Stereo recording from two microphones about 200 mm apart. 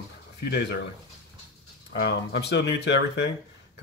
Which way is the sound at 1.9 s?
60° left (ahead or behind).